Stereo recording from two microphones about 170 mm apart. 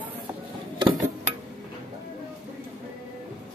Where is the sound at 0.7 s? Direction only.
25° right (ahead or behind).